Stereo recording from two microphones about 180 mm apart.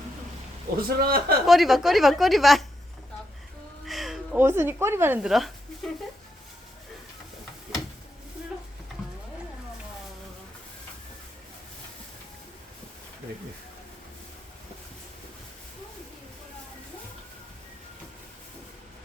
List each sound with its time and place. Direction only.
0.8 s a man's voice: 55° right (ahead or behind)
1.5 s a woman's voice: centre (ahead or behind)
3.8 s a woman's voice: centre (ahead or behind)